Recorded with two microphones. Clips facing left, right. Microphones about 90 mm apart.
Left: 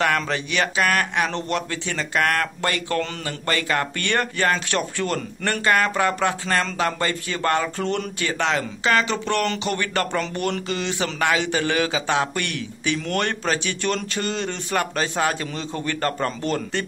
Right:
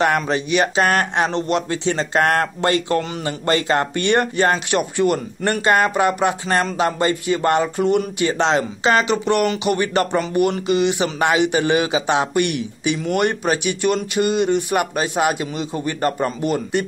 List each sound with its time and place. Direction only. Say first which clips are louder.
0.0 s a man's voice: right 4 dB; 20° right (ahead or behind)